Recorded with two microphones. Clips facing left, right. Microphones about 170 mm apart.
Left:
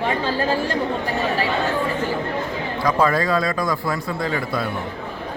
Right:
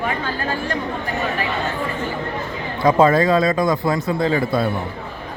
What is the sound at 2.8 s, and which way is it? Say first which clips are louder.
A man's voice: right 5 dB; 25° right (ahead or behind).